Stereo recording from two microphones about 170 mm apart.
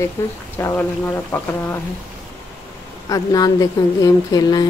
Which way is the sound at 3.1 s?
20° left (ahead or behind).